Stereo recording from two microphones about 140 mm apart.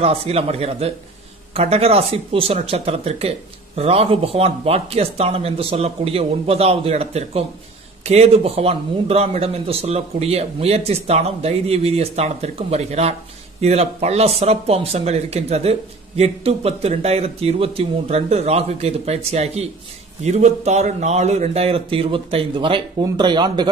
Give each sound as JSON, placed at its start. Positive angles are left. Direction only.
{"t": 0.0, "sound": "speech", "side_deg": -45}